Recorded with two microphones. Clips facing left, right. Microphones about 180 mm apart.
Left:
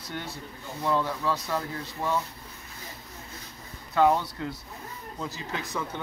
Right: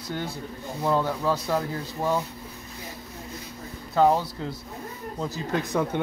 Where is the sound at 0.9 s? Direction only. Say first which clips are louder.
Right 3 dB; 15° right (ahead or behind).